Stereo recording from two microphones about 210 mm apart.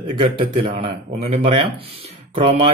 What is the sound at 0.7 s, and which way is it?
Speech, 30° right (ahead or behind).